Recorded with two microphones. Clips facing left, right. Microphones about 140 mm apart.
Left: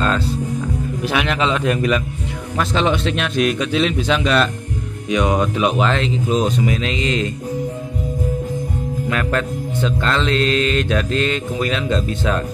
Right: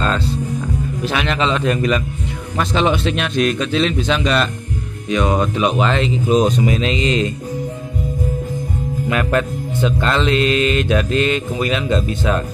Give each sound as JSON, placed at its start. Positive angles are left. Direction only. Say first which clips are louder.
{"t": 1.0, "sound": "speech", "louder": "even", "side_deg": 5}
{"t": 3.3, "sound": "a man's voice", "louder": "even", "side_deg": 10}
{"t": 6.3, "sound": "speech", "louder": "right 4 dB", "side_deg": -20}
{"t": 9.1, "sound": "speech", "louder": "right 3 dB", "side_deg": -10}